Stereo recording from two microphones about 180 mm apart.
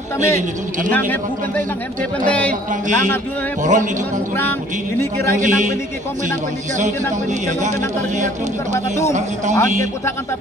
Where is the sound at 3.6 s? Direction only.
45° right (ahead or behind).